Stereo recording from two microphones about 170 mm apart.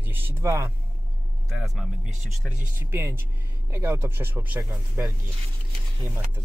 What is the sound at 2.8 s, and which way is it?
Speech, 15° right (ahead or behind).